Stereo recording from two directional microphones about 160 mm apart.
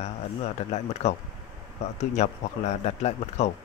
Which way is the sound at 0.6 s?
45° left (ahead or behind).